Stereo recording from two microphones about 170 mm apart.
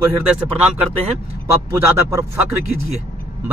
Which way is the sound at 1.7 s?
15° right (ahead or behind).